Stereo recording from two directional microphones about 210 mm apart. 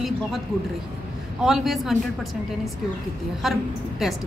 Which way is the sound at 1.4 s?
Centre (ahead or behind).